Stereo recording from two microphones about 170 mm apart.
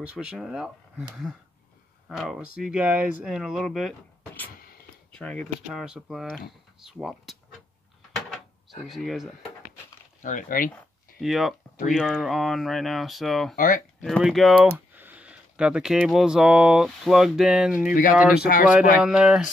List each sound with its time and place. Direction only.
0.0 s speech: 5° right (ahead or behind)
5.1 s speech: 5° left (ahead or behind)
5.7 s speech: 5° right (ahead or behind)
8.8 s speech: centre (ahead or behind)
10.2 s speech: 50° left (ahead or behind)
10.7 s a sound: centre (ahead or behind)
11.9 s speech: centre (ahead or behind)
13.6 s speech: 50° left (ahead or behind)
14.0 s speech: centre (ahead or behind)
18.4 s speech: 55° left (ahead or behind)
18.7 s speech: 5° right (ahead or behind)